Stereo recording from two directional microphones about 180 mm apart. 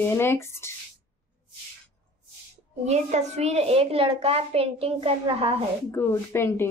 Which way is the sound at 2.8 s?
40° right (ahead or behind).